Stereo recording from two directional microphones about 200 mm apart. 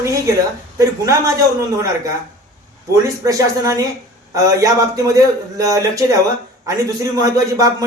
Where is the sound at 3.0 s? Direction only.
15° right (ahead or behind).